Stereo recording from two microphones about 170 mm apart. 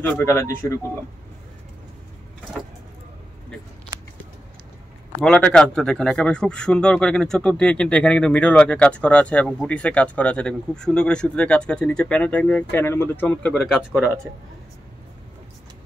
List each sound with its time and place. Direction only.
0.0 s speech: 15° left (ahead or behind)
3.9 s a sound: 25° right (ahead or behind)
5.2 s speech: 5° left (ahead or behind)